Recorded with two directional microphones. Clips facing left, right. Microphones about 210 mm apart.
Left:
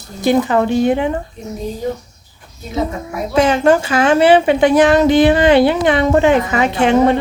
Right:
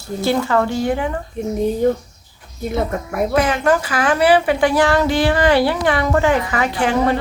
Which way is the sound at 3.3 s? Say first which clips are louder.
Left 5 dB; 25° left (ahead or behind).